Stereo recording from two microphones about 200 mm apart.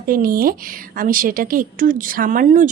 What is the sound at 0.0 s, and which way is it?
A woman's voice, 45° right (ahead or behind).